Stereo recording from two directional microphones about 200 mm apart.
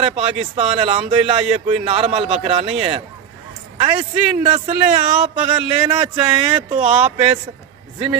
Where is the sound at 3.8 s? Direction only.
30° right (ahead or behind).